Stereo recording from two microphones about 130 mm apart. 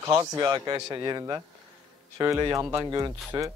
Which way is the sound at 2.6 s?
30° right (ahead or behind).